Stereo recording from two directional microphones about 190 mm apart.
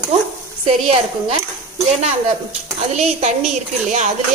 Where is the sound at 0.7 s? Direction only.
30° right (ahead or behind).